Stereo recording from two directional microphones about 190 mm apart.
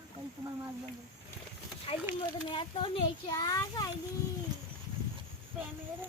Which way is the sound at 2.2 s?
25° left (ahead or behind).